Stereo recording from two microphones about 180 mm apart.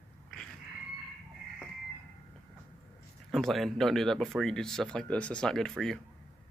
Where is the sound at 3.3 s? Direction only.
Centre (ahead or behind).